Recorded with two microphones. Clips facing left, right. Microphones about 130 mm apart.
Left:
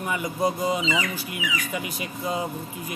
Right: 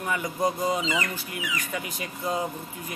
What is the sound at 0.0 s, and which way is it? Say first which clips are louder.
A man's voice: left 1 dB; 10° left (ahead or behind).